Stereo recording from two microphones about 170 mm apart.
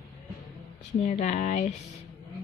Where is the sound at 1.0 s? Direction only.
45° left (ahead or behind).